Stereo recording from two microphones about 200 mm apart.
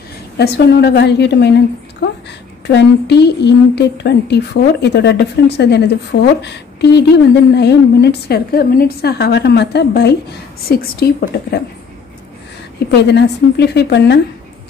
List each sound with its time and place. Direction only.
0.4 s a woman's voice: 55° left (ahead or behind)
12.9 s a woman's voice: 55° left (ahead or behind)